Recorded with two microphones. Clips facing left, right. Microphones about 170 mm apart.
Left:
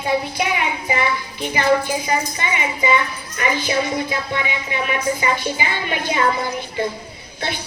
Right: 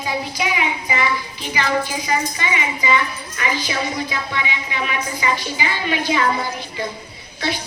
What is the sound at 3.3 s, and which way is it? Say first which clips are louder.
Speech: left 4 dB; 50° left (ahead or behind).